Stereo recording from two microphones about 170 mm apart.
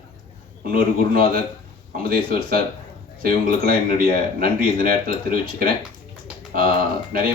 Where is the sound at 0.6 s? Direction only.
60° right (ahead or behind).